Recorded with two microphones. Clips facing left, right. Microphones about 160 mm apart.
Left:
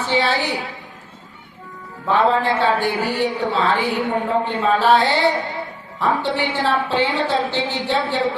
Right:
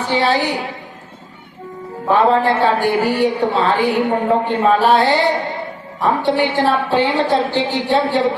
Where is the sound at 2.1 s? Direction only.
40° right (ahead or behind).